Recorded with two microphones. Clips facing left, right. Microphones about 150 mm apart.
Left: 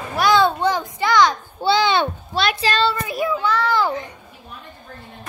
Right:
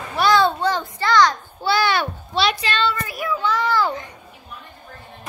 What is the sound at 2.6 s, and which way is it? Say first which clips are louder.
Child singing: left 3 dB; 35° left (ahead or behind).